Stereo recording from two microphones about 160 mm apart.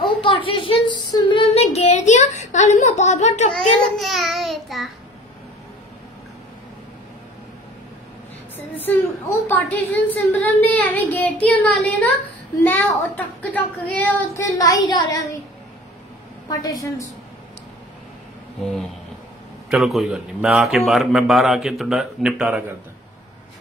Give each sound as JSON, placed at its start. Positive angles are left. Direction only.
{"t": 0.0, "sound": "a sound", "side_deg": 35}
{"t": 3.5, "sound": "a child's voice", "side_deg": 0}
{"t": 9.5, "sound": "speech", "side_deg": 10}
{"t": 16.4, "sound": "a woman's voice", "side_deg": 25}
{"t": 19.7, "sound": "a man's voice", "side_deg": 0}